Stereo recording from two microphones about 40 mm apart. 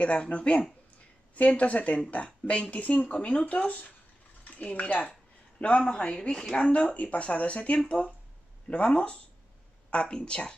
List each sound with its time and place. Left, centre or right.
0.0 s speech: left
5.9 s speech: centre